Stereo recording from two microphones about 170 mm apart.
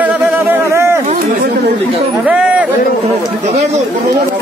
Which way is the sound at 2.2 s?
5° right (ahead or behind).